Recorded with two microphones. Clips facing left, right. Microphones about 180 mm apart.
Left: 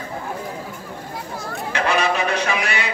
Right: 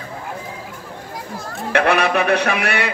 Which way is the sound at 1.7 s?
60° right (ahead or behind).